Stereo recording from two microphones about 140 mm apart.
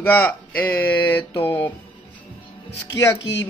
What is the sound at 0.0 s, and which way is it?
Speech, 15° left (ahead or behind).